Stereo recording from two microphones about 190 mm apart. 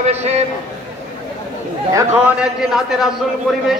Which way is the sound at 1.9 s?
5° right (ahead or behind).